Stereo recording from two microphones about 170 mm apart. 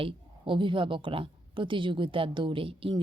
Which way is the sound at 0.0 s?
30° right (ahead or behind).